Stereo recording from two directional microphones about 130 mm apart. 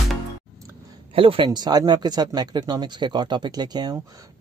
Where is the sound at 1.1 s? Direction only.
40° right (ahead or behind).